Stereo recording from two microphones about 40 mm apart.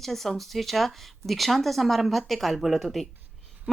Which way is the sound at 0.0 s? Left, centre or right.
Centre.